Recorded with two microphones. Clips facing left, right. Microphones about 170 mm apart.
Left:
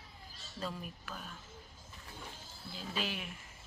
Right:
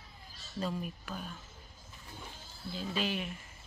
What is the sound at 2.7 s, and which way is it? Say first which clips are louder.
Speech: right 5 dB; 5° left (ahead or behind).